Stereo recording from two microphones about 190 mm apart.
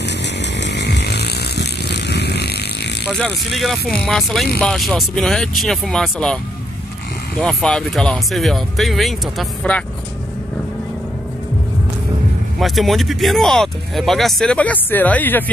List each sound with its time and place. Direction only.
0.2 s chainsaw: 65° left (ahead or behind)
3.1 s speech: centre (ahead or behind)
12.5 s speech: centre (ahead or behind)